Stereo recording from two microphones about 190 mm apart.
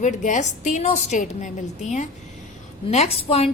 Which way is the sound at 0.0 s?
40° left (ahead or behind).